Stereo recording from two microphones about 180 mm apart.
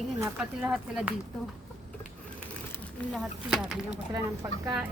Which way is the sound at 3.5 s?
5° right (ahead or behind).